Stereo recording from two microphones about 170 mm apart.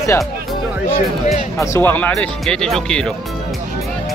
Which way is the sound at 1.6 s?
15° left (ahead or behind).